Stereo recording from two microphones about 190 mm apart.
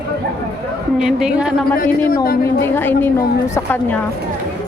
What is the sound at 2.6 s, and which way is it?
A woman's voice, 10° left (ahead or behind).